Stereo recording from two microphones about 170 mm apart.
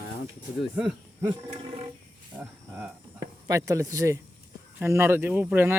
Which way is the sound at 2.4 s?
5° right (ahead or behind).